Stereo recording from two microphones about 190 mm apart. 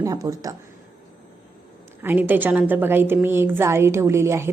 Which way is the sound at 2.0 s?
10° right (ahead or behind).